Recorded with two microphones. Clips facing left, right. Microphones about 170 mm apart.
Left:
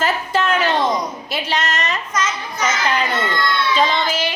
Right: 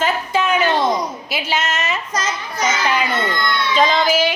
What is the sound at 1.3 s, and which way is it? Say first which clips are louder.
Speech: even; centre (ahead or behind).